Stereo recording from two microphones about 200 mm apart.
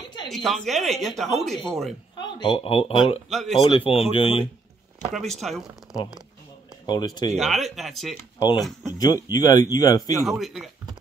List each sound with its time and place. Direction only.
0.3 s speech: centre (ahead or behind)
2.1 s speech: 25° left (ahead or behind)
3.3 s speech: centre (ahead or behind)
3.6 s speech: 30° left (ahead or behind)
5.1 s speech: centre (ahead or behind)
6.9 s speech: 20° left (ahead or behind)
7.3 s speech: centre (ahead or behind)
8.9 s speech: 20° left (ahead or behind)
10.2 s speech: centre (ahead or behind)